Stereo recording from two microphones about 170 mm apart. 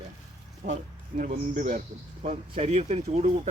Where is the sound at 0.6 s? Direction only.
55° right (ahead or behind).